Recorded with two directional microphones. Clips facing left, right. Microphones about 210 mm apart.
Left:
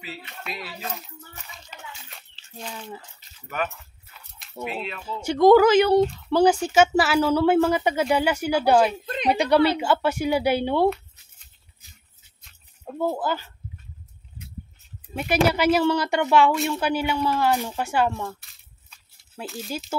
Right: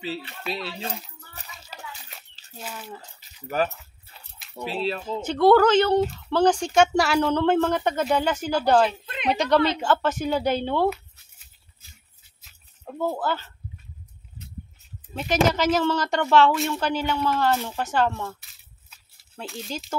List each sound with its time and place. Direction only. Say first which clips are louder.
0.0 s speech: right 6 dB; 30° right (ahead or behind)
1.7 s a sound: right 2 dB; 35° right (ahead or behind)
2.6 s speech: left 1 dB; 5° right (ahead or behind)
3.4 s keys jangling: right 4 dB; 35° right (ahead or behind)
4.4 s keys jangling: left 2 dB; centre (ahead or behind)
4.6 s speech: right 5 dB; 30° right (ahead or behind)
5.2 s speech: left 2 dB; 10° left (ahead or behind)
9.0 s a sound: left 3 dB; 40° left (ahead or behind)
9.3 s speech: left 2 dB; 10° left (ahead or behind)
12.4 s a sound: left 1 dB; 5° right (ahead or behind)
12.9 s speech: left 1 dB; 10° left (ahead or behind)
15.1 s speech: left 1 dB; 10° left (ahead or behind)
16.5 s speech: left 1 dB; centre (ahead or behind)
18.4 s a sound: even; centre (ahead or behind)